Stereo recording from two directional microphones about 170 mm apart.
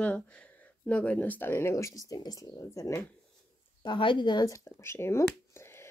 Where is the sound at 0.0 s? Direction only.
5° left (ahead or behind).